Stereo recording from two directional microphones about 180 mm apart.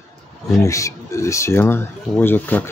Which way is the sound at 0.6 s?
15° left (ahead or behind).